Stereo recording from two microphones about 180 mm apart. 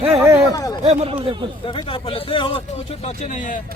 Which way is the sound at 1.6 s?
30° left (ahead or behind).